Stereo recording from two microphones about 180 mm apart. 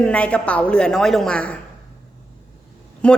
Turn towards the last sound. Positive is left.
turn(degrees=5)  # may be behind; listen again after turning